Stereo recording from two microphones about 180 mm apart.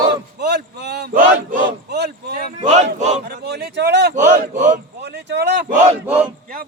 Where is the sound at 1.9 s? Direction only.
65° right (ahead or behind).